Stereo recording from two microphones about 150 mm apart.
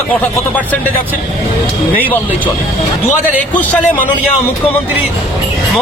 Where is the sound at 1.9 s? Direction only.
10° left (ahead or behind).